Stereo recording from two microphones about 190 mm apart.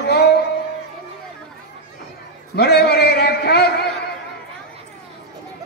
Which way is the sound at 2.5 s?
60° left (ahead or behind).